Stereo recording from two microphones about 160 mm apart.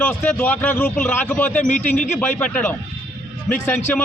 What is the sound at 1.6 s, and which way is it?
Speech, 50° left (ahead or behind).